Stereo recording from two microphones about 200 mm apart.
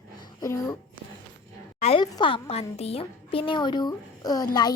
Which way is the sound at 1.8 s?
30° left (ahead or behind).